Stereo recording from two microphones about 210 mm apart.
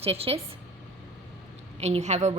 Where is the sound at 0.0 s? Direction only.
30° right (ahead or behind).